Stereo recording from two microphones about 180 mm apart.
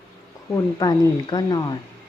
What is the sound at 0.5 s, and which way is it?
A woman's voice, 20° left (ahead or behind).